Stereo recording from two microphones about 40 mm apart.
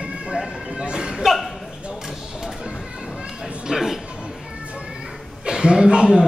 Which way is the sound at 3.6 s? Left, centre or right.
Centre.